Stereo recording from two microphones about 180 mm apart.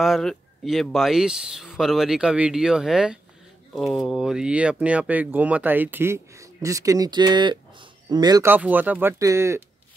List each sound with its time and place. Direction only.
0.0 s speech: centre (ahead or behind); by 9.6 s 15° right (ahead or behind)